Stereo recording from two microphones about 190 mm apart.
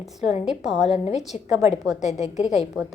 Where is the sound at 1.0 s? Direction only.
35° left (ahead or behind).